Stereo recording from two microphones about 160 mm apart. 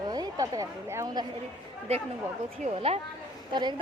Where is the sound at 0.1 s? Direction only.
25° right (ahead or behind).